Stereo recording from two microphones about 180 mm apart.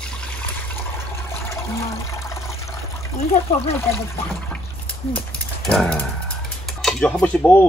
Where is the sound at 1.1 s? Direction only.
15° left (ahead or behind).